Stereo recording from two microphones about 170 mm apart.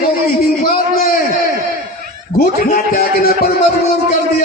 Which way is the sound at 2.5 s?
60° left (ahead or behind).